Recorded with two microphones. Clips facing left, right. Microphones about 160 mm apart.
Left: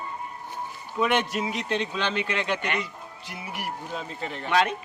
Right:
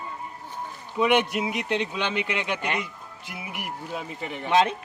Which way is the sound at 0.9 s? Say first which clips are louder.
Right 3 dB; 15° right (ahead or behind).